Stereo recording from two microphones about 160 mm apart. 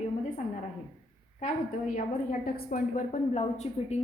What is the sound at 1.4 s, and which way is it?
A woman's voice, 55° left (ahead or behind).